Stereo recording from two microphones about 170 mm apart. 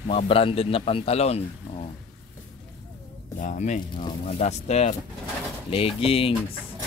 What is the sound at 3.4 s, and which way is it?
Speech, 45° left (ahead or behind).